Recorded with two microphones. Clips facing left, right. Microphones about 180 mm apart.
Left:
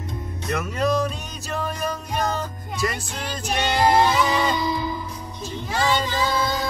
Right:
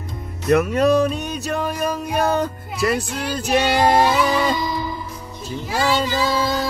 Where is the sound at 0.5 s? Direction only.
65° right (ahead or behind).